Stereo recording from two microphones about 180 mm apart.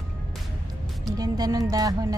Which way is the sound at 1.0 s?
20° right (ahead or behind).